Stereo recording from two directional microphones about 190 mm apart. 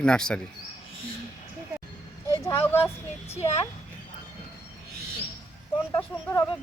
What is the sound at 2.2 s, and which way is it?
Vehicle, 15° left (ahead or behind).